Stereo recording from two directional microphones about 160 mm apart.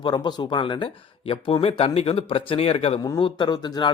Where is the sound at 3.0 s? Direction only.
25° left (ahead or behind).